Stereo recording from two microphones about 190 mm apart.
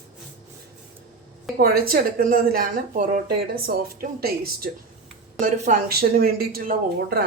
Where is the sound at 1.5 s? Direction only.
50° right (ahead or behind).